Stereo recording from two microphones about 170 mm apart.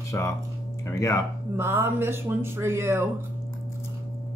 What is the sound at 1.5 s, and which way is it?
Speech, 15° right (ahead or behind).